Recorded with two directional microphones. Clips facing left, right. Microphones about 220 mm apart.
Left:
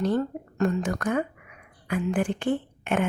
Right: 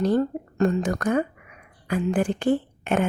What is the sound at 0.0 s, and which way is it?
Speech, 35° right (ahead or behind).